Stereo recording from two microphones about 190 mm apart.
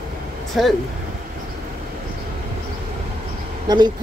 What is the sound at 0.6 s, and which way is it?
Speech, centre (ahead or behind).